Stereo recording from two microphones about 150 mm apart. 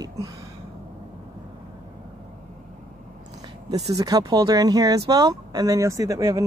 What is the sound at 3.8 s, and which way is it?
Speech, 25° right (ahead or behind).